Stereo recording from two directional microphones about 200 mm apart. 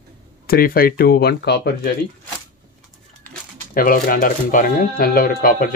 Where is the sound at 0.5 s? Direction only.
50° left (ahead or behind).